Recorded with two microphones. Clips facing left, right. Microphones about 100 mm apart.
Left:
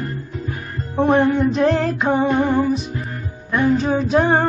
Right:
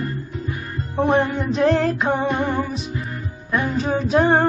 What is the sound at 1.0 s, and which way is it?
Music, centre (ahead or behind).